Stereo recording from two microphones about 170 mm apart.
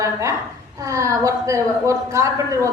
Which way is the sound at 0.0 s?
20° right (ahead or behind).